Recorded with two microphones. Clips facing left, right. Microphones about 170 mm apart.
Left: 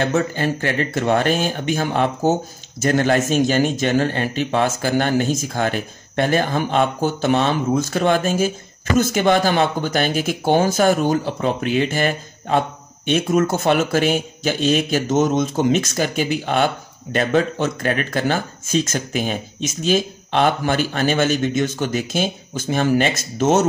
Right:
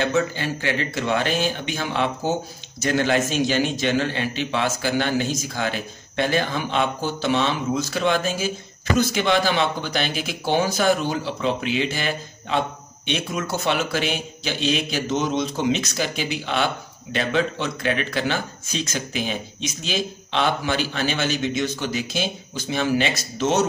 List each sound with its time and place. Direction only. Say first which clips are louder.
0.0 s speech: left 3 dB; 50° left (ahead or behind)